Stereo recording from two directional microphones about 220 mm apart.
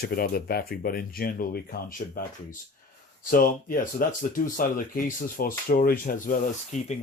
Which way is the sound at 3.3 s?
40° left (ahead or behind).